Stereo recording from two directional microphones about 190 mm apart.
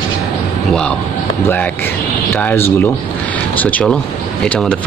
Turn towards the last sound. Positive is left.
turn(degrees=10)  # may be behind; listen again after turning